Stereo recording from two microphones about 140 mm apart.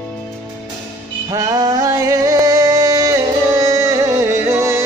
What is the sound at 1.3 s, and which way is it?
Music, 25° right (ahead or behind).